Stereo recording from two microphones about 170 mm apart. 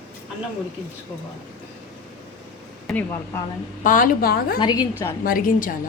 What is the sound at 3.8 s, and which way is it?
Speech, 55° left (ahead or behind).